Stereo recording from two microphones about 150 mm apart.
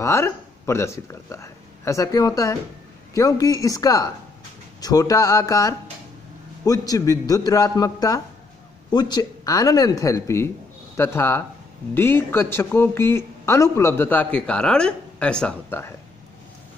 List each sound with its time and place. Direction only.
0.0 s speech: 20° left (ahead or behind)